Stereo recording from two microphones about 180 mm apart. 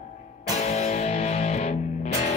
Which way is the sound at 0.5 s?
35° left (ahead or behind).